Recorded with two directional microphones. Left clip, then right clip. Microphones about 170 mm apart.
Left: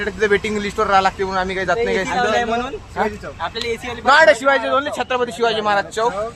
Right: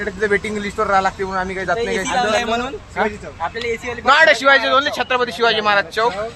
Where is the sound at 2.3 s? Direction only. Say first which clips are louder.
Even; 50° right (ahead or behind).